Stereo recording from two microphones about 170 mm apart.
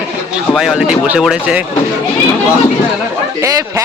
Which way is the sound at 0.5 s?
5° right (ahead or behind).